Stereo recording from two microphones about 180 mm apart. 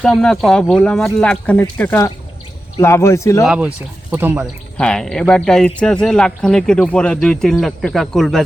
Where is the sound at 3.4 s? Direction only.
5° right (ahead or behind).